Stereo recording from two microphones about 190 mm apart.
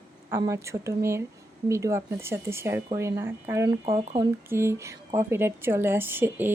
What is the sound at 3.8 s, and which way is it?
Speech, 30° right (ahead or behind).